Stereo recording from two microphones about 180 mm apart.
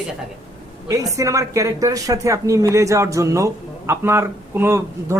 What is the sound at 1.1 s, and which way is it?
Speech, 15° right (ahead or behind).